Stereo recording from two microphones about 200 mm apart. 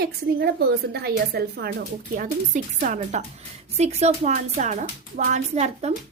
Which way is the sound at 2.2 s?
40° right (ahead or behind).